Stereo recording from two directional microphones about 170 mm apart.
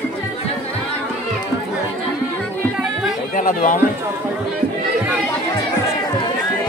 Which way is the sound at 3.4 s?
50° left (ahead or behind).